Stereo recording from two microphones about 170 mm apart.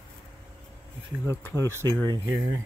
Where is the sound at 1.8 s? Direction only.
15° left (ahead or behind).